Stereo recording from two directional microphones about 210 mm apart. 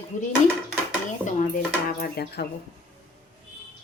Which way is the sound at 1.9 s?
50° left (ahead or behind).